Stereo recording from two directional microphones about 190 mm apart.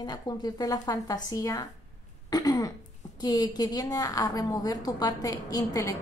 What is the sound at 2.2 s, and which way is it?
Throat clearing, 20° left (ahead or behind).